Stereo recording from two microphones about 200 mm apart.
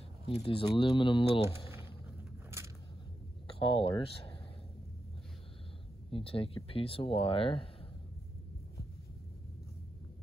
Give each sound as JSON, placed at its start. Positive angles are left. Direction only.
{"t": 0.3, "sound": "speech", "side_deg": 30}
{"t": 3.4, "sound": "speech", "side_deg": 25}
{"t": 6.0, "sound": "speech", "side_deg": 25}